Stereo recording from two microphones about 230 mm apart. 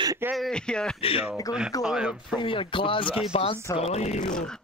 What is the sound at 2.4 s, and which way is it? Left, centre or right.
Speech, left.